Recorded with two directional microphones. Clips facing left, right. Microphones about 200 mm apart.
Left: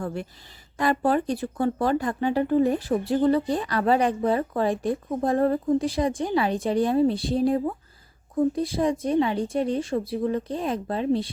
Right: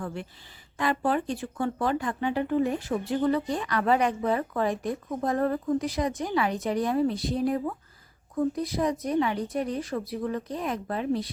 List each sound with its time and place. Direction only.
0.0 s speech: 40° left (ahead or behind)